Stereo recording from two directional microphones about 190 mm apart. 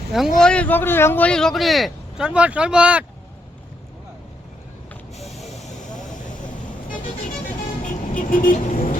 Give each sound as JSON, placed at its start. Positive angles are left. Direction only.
{"t": 0.3, "sound": "speech", "side_deg": 5}
{"t": 5.2, "sound": "printer", "side_deg": 0}
{"t": 5.5, "sound": "vehicle", "side_deg": 40}